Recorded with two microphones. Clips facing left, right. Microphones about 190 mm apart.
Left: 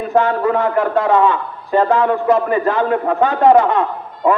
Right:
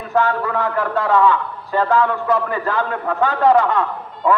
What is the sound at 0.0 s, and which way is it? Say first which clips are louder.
A man's voice: left 4 dB; 20° left (ahead or behind).